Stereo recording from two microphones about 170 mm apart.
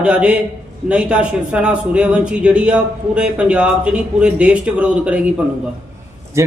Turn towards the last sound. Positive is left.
turn(degrees=-15)  # may be behind; listen again after turning